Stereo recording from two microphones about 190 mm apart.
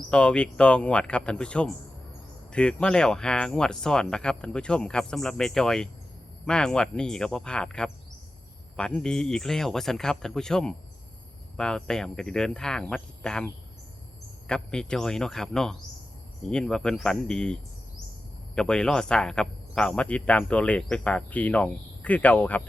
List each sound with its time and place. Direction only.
0.1 s speech: 5° left (ahead or behind)